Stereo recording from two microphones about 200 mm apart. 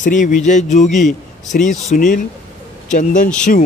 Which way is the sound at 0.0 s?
40° left (ahead or behind).